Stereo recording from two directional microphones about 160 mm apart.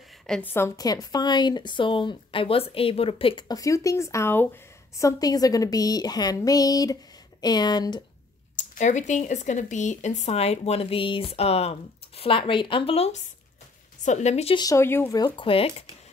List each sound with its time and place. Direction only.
0.3 s a woman's voice: 10° left (ahead or behind)
8.5 s speech: 50° left (ahead or behind)
14.6 s a woman's voice: 20° left (ahead or behind); by 15.7 s 35° left (ahead or behind)